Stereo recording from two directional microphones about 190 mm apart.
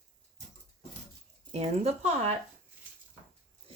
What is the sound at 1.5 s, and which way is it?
Speech, 35° right (ahead or behind).